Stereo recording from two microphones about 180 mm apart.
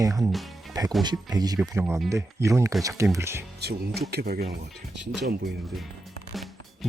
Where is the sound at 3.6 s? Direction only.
60° right (ahead or behind).